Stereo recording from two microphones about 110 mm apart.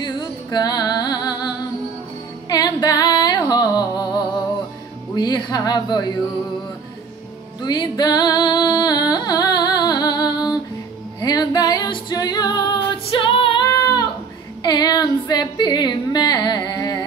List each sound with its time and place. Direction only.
0.0 s music: 40° left (ahead or behind)
2.5 s music: 40° left (ahead or behind)
5.1 s speech: 40° left (ahead or behind)
7.6 s music: 40° left (ahead or behind)
13.7 s a sound: 35° left (ahead or behind)
14.6 s female singing: 40° left (ahead or behind)